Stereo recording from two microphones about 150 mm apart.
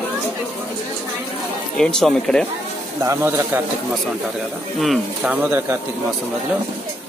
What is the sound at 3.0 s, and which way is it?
Speech, 15° right (ahead or behind).